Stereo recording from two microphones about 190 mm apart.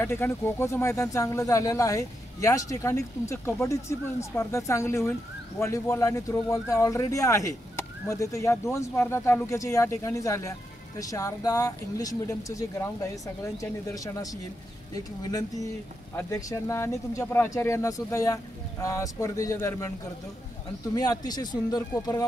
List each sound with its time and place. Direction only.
0.0 s speech: 10° left (ahead or behind)